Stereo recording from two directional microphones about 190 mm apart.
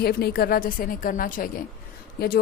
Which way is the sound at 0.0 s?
55° left (ahead or behind).